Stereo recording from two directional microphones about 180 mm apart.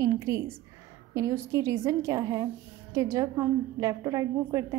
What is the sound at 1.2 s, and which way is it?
A woman's voice, 15° right (ahead or behind).